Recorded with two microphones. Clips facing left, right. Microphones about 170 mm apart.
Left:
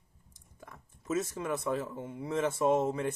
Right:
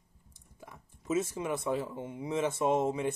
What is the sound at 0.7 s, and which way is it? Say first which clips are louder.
Speech: right 1 dB; 10° right (ahead or behind).